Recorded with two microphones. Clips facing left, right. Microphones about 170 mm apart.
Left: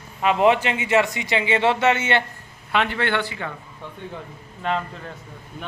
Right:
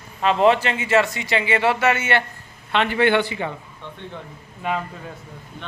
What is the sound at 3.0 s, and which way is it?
Speech, 15° right (ahead or behind).